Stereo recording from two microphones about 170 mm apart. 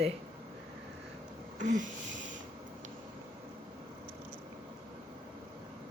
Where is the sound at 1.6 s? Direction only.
45° right (ahead or behind).